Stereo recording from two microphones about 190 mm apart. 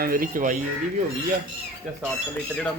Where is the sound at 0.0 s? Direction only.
50° right (ahead or behind).